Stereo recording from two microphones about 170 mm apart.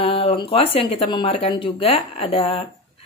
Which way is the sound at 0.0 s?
35° left (ahead or behind).